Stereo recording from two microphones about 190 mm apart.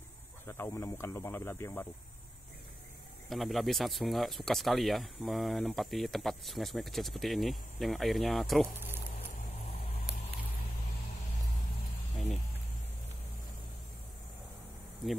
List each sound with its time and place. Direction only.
0.5 s speech: 15° left (ahead or behind)
3.3 s speech: centre (ahead or behind)
15.0 s speech: centre (ahead or behind)